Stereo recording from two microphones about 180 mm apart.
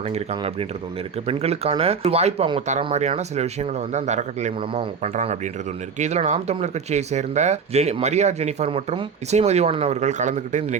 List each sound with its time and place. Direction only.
0.0 s speech: 35° right (ahead or behind)